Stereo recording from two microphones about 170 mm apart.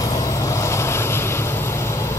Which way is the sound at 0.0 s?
20° left (ahead or behind).